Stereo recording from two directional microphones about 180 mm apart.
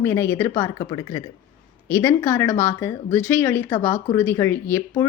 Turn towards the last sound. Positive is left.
turn(degrees=15)  # may be behind; listen again after turning